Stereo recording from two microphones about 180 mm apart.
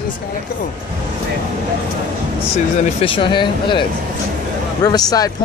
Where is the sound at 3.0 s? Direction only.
30° left (ahead or behind).